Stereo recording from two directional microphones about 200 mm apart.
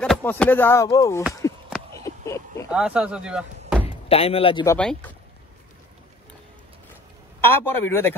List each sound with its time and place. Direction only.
0.0 s a man's voice: 5° left (ahead or behind)
1.4 s a sound: 15° left (ahead or behind)
2.7 s speech: 5° right (ahead or behind)
3.8 s speech: 30° left (ahead or behind)
4.6 s a man's voice: 5° left (ahead or behind)
7.4 s a man's voice: 10° left (ahead or behind)